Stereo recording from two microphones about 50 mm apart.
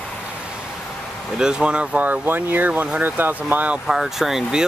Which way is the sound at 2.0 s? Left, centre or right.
Right.